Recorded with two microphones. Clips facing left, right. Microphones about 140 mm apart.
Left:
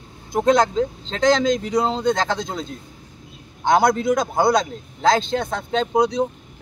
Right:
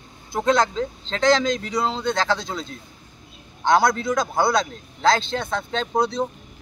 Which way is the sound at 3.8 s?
20° left (ahead or behind).